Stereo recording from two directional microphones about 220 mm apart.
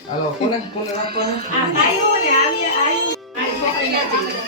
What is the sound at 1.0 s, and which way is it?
Speech, 45° right (ahead or behind).